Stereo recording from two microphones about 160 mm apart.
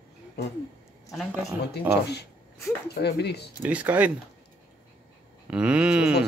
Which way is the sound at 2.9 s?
90° left.